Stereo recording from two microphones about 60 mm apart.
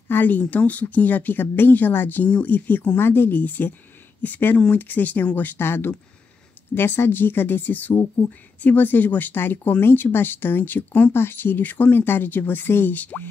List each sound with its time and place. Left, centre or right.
0.1 s speech: left
11.1 s speech: left